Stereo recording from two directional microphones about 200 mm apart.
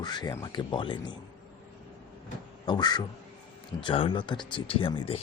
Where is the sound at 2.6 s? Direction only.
20° left (ahead or behind).